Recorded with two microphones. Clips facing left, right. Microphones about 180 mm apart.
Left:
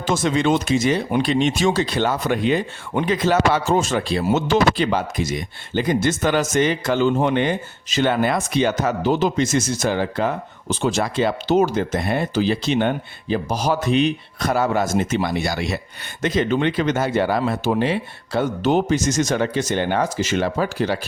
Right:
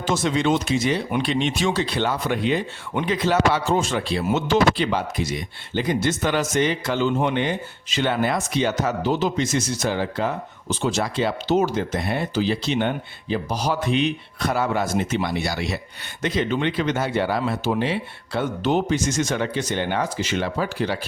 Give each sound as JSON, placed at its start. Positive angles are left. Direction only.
{"t": 0.0, "sound": "speech", "side_deg": 50}